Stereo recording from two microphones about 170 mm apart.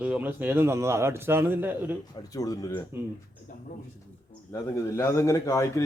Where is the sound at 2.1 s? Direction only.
20° left (ahead or behind).